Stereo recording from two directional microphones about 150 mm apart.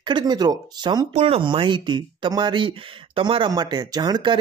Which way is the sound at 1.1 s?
40° right (ahead or behind).